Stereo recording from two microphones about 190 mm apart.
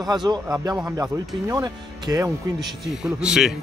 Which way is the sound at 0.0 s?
20° right (ahead or behind).